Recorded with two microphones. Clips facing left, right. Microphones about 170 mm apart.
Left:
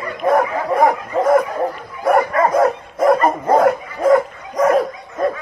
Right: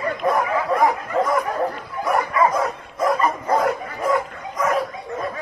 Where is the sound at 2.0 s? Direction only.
55° left (ahead or behind).